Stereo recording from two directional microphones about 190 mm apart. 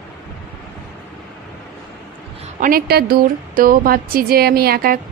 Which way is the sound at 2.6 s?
50° right (ahead or behind).